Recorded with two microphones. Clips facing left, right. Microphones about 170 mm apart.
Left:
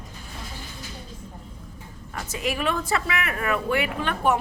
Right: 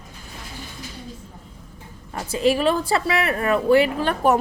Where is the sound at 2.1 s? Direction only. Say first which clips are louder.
Right 9 dB; 30° right (ahead or behind).